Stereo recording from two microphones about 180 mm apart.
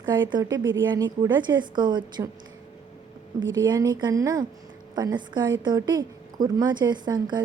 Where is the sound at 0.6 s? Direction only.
90° right.